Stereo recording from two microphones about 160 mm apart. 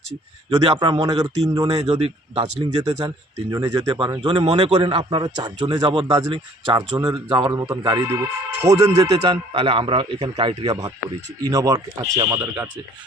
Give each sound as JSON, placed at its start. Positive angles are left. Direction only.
{"t": 0.6, "sound": "a man's voice", "side_deg": -30}
{"t": 1.8, "sound": "a man's voice", "side_deg": -40}
{"t": 4.4, "sound": "a man's voice", "side_deg": -40}
{"t": 9.5, "sound": "a man's voice", "side_deg": -35}